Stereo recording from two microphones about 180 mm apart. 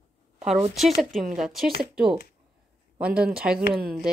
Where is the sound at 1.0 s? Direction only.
Centre (ahead or behind).